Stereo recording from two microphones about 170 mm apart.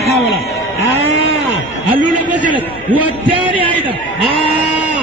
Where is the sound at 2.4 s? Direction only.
10° right (ahead or behind).